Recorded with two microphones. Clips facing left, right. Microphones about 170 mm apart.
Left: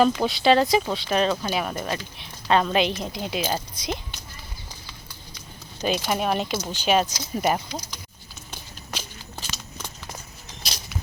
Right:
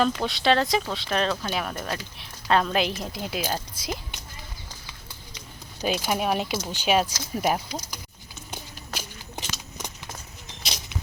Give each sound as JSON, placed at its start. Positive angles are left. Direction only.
{"t": 0.0, "sound": "speech", "side_deg": 5}
{"t": 5.8, "sound": "speech", "side_deg": -10}
{"t": 8.4, "sound": "a sound", "side_deg": -10}